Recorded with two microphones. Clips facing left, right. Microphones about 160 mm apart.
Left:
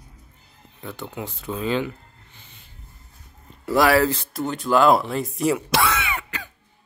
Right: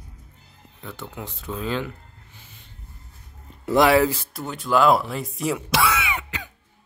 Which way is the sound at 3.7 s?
20° right (ahead or behind).